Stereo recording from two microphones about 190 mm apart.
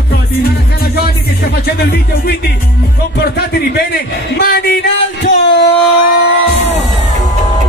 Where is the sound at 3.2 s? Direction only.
55° left (ahead or behind).